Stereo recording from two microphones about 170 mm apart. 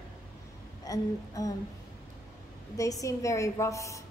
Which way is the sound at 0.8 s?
20° left (ahead or behind).